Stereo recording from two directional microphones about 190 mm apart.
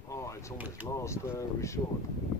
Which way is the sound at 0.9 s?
15° left (ahead or behind).